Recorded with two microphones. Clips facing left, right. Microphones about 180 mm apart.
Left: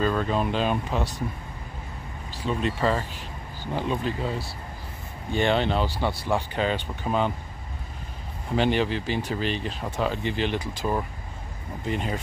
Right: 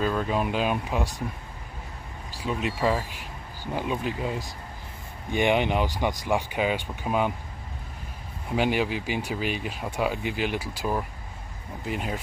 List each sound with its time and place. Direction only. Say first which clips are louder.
0.0 s speech: left 1 dB; 5° right (ahead or behind)
2.3 s speech: left 2 dB; 10° right (ahead or behind)
8.5 s speech: left 1 dB; 10° right (ahead or behind)